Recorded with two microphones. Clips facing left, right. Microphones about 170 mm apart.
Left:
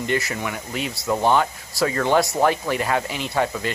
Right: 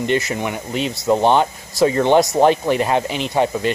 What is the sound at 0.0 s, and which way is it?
Speech, 20° right (ahead or behind).